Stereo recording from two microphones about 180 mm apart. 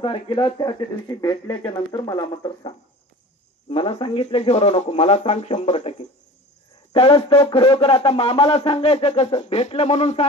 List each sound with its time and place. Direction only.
0.0 s speech: 25° left (ahead or behind)
3.7 s speech: 30° left (ahead or behind)